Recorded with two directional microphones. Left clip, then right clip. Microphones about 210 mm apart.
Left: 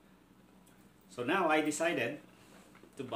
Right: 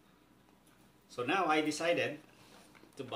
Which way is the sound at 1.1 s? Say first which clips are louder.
Left 1 dB; 20° left (ahead or behind).